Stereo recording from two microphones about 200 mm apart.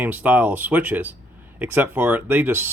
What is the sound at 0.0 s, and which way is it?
Speech, 10° right (ahead or behind).